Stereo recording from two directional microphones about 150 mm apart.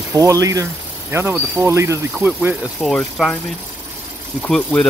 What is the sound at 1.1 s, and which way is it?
Speech, 15° right (ahead or behind).